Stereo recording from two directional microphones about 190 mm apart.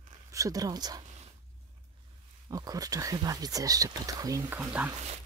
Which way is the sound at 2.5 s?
20° right (ahead or behind).